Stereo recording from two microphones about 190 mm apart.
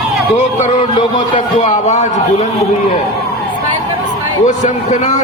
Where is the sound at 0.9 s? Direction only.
25° left (ahead or behind).